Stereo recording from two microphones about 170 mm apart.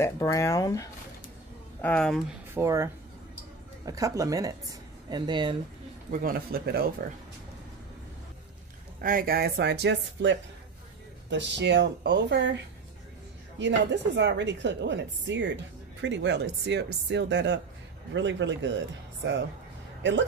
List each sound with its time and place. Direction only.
0.0 s speech: 15° left (ahead or behind)
1.8 s speech: 5° left (ahead or behind)
2.5 s speech: 15° right (ahead or behind)
6.2 s speech: 60° right (ahead or behind)
9.0 s a woman's voice: 55° right (ahead or behind); by 18.7 s 90° right
20.0 s speech: 90° right